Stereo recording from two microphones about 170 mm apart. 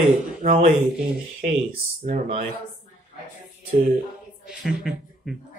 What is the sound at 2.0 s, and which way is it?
Speech, 50° right (ahead or behind).